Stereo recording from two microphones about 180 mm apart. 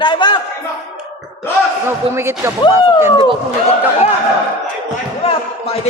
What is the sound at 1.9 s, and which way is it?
Speech, 15° right (ahead or behind).